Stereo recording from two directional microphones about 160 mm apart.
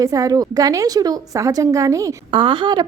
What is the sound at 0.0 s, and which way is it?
A woman's voice, 20° right (ahead or behind).